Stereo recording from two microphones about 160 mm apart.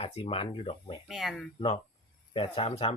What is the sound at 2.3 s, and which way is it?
Speech, 35° left (ahead or behind).